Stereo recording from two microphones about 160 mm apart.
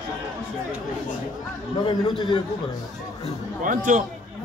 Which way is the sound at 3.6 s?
55° right (ahead or behind).